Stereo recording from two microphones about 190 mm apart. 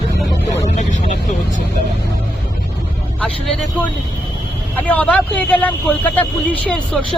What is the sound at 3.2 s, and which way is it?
Speech, 5° left (ahead or behind).